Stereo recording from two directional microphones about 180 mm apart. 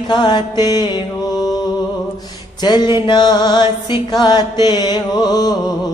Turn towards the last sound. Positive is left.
turn(degrees=20)  # may be behind; listen again after turning